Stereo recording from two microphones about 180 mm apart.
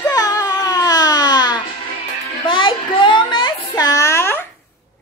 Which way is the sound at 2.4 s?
30° left (ahead or behind).